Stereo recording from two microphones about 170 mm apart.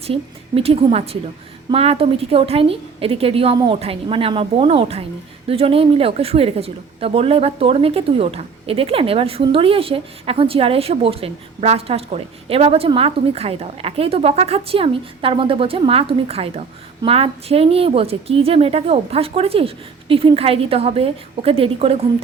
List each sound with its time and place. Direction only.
0.0 s a woman's voice: 35° right (ahead or behind)